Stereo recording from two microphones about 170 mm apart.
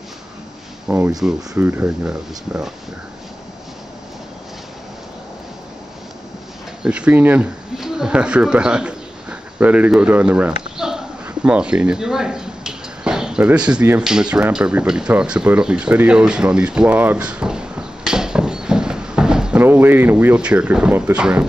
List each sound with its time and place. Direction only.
0.8 s speech: 10° right (ahead or behind)
6.8 s speech: 5° right (ahead or behind)